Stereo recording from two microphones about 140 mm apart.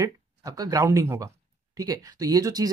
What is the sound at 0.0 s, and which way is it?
Speech, 25° right (ahead or behind).